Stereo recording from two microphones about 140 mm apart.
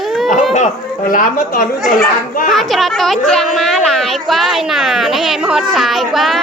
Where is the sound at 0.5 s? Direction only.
65° left (ahead or behind).